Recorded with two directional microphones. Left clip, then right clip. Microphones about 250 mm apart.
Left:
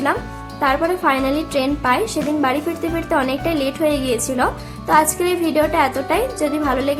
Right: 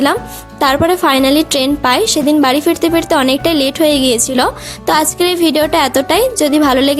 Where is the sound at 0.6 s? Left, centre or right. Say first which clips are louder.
Right 6 dB; right.